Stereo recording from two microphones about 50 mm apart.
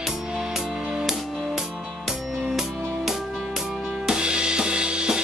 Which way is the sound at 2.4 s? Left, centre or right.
Centre.